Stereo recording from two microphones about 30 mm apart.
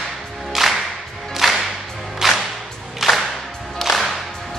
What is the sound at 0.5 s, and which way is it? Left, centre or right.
Music, centre.